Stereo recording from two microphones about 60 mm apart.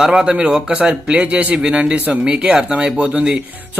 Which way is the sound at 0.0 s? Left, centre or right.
Centre.